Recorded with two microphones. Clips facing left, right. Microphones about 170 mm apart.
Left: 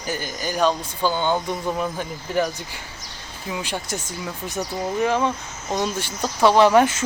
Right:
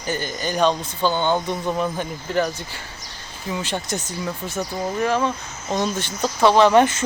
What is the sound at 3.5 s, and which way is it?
Speech, 10° left (ahead or behind).